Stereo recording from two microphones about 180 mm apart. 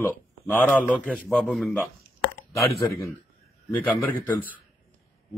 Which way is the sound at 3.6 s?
10° left (ahead or behind).